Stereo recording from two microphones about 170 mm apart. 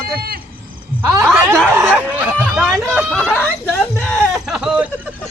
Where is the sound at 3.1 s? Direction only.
10° left (ahead or behind).